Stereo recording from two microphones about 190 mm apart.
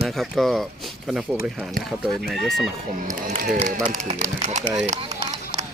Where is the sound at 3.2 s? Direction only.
40° right (ahead or behind).